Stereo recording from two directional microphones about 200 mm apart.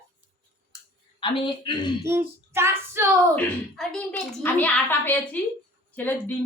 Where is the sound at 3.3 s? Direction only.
5° left (ahead or behind).